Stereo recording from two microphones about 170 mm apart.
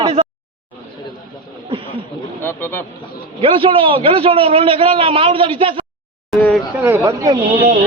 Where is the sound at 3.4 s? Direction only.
30° right (ahead or behind).